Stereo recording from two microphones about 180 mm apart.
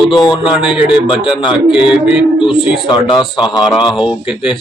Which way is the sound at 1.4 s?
25° left (ahead or behind).